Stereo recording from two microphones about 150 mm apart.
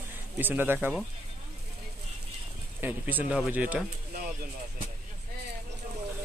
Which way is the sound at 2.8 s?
10° right (ahead or behind).